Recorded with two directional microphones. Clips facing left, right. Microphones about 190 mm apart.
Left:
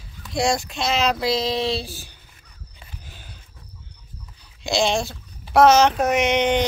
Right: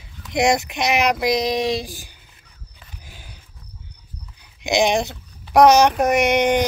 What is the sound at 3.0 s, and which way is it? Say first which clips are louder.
Wild animals: right 1 dB; 10° right (ahead or behind).